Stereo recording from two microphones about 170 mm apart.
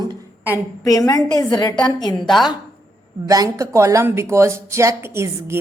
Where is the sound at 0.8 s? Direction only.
20° left (ahead or behind).